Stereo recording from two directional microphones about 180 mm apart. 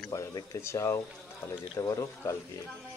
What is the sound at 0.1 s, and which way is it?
Speech, 20° left (ahead or behind).